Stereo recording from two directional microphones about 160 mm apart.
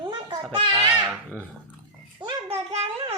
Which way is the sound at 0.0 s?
30° right (ahead or behind).